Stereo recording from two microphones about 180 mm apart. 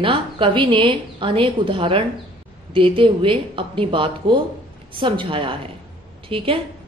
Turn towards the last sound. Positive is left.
turn(degrees=-30)  # may be behind; listen again after turning